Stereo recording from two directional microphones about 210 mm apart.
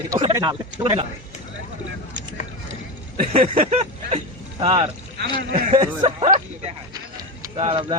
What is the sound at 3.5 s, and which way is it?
Speech, 30° right (ahead or behind).